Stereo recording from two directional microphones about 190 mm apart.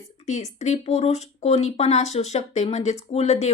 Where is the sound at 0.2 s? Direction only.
35° left (ahead or behind).